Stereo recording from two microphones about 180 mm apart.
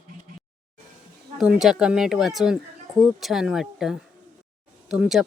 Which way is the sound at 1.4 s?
Centre (ahead or behind).